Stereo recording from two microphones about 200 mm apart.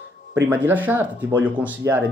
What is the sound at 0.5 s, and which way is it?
Speech, 10° right (ahead or behind).